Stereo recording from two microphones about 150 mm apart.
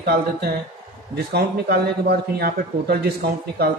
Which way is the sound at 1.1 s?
90° right.